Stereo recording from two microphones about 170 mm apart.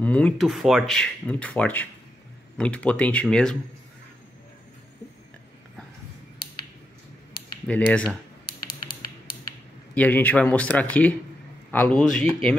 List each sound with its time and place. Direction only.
0.0 s speech: 10° left (ahead or behind)
7.6 s speech: 5° left (ahead or behind)
8.6 s a sound: 60° left (ahead or behind)
9.9 s speech: 10° left (ahead or behind)